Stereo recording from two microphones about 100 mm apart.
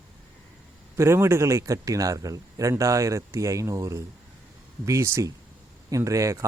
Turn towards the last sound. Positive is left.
turn(degrees=-30)  # may be behind; listen again after turning